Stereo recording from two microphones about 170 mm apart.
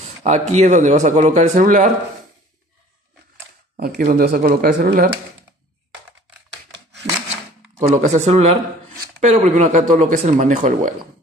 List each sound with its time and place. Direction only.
0.2 s speech: 40° right (ahead or behind)
3.7 s speech: 50° right (ahead or behind)
7.9 s speech: 40° right (ahead or behind)